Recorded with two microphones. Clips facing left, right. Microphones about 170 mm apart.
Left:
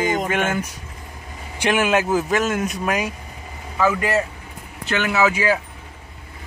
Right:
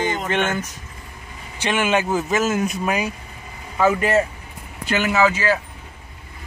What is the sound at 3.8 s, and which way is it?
Speech, 20° right (ahead or behind).